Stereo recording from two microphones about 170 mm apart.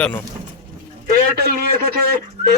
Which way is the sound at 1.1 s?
70° right (ahead or behind).